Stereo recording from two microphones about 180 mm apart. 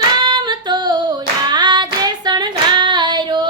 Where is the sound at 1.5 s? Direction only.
25° right (ahead or behind).